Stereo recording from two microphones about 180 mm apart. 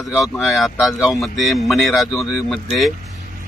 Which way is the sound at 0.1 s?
Centre (ahead or behind).